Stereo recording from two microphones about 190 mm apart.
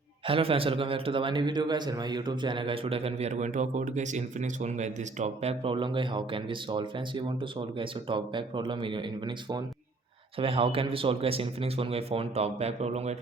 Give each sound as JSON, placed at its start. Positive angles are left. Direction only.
{"t": 0.3, "sound": "a man's voice", "side_deg": -30}